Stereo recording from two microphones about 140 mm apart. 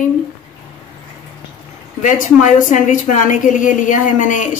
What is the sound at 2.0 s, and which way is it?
A woman's voice, 65° left (ahead or behind).